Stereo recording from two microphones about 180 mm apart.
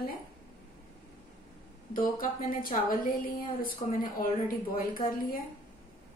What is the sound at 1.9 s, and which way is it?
A woman's voice, 50° left (ahead or behind).